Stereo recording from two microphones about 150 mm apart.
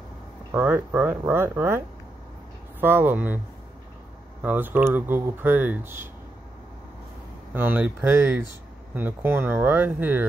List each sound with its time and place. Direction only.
0.5 s speech: 15° right (ahead or behind)
2.8 s speech: 15° right (ahead or behind)
4.4 s speech: 10° right (ahead or behind)
7.5 s speech: 10° right (ahead or behind)